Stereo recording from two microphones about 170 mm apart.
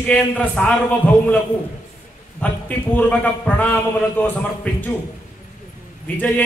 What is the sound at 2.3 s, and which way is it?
A man's voice, 10° left (ahead or behind).